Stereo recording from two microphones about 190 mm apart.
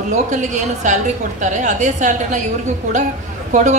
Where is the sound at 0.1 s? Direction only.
40° right (ahead or behind).